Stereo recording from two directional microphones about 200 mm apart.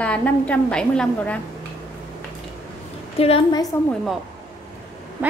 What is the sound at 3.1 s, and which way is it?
Speech, 30° left (ahead or behind).